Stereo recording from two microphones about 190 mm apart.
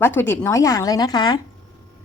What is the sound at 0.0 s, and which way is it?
A woman's voice, 10° left (ahead or behind).